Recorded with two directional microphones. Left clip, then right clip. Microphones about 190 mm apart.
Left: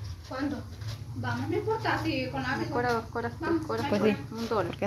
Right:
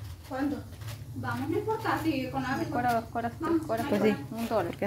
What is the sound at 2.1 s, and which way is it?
Speech, 65° right (ahead or behind).